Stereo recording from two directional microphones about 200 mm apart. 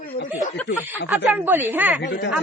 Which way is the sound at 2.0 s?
60° left (ahead or behind).